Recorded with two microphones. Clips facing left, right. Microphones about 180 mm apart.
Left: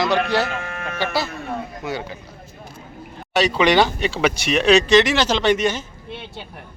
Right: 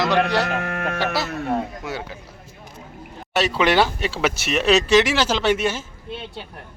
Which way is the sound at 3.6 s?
5° right (ahead or behind).